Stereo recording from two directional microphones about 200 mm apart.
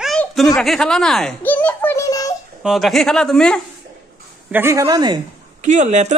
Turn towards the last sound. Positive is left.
turn(degrees=-35)  # may be behind; listen again after turning